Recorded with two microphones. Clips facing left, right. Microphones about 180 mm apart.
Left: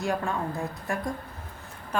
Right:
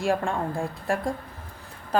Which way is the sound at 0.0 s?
30° right (ahead or behind).